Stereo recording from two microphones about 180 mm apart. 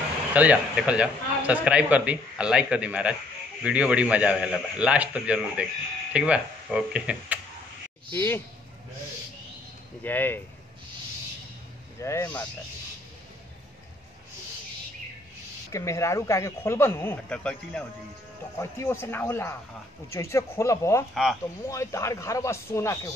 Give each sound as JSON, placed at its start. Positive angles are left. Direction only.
{"t": 0.3, "sound": "a man's voice", "side_deg": -10}
{"t": 8.1, "sound": "speech", "side_deg": 10}
{"t": 10.0, "sound": "speech", "side_deg": 10}
{"t": 12.0, "sound": "speech", "side_deg": 15}
{"t": 15.7, "sound": "speech", "side_deg": 15}
{"t": 21.1, "sound": "speech", "side_deg": 0}
{"t": 21.6, "sound": "speech", "side_deg": 15}